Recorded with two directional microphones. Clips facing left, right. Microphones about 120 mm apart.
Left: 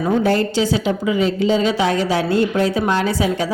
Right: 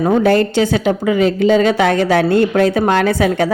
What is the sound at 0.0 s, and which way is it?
A woman's voice, 65° right (ahead or behind).